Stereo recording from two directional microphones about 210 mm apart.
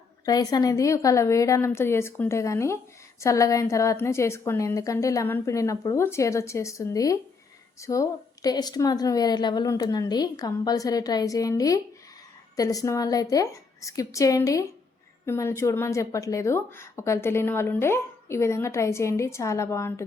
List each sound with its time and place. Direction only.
0.3 s a woman's voice: 20° left (ahead or behind)